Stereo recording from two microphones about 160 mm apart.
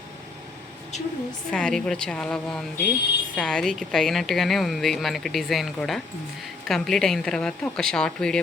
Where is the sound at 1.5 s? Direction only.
5° left (ahead or behind).